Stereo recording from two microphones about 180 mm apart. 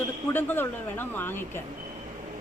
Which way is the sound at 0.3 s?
10° left (ahead or behind).